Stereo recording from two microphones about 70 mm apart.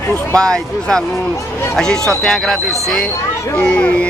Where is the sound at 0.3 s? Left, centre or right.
Centre.